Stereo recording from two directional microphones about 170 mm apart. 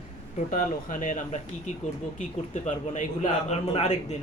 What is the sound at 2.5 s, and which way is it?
A man's voice, 45° left (ahead or behind).